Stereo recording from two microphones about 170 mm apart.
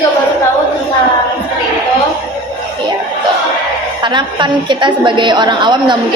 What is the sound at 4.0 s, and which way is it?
A woman's voice, 25° right (ahead or behind).